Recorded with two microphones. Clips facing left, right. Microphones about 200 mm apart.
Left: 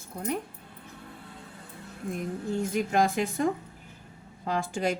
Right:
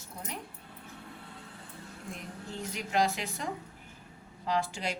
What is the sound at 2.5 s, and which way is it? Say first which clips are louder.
A woman's voice: left 6 dB; 50° left (ahead or behind).